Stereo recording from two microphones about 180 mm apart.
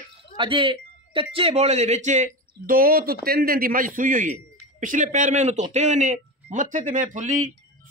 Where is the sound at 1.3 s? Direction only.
35° right (ahead or behind).